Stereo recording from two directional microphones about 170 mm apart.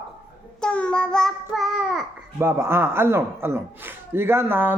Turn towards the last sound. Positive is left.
turn(degrees=-10)  # may be behind; listen again after turning